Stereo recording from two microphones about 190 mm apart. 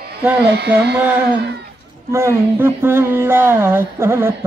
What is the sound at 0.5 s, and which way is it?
Carnatic music, 60° right (ahead or behind).